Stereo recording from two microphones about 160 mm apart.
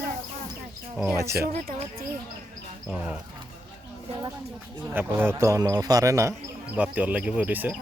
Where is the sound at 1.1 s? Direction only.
20° right (ahead or behind).